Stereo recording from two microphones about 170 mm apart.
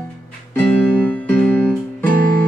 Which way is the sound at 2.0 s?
55° right (ahead or behind).